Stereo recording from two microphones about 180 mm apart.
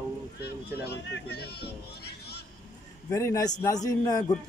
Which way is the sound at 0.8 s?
65° left (ahead or behind).